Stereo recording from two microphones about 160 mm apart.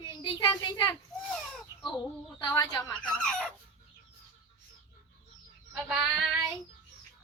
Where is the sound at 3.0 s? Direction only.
5° left (ahead or behind).